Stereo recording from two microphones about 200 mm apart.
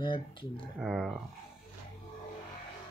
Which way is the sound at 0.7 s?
Centre (ahead or behind).